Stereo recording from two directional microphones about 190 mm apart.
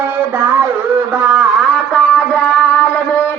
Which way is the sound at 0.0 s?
10° right (ahead or behind).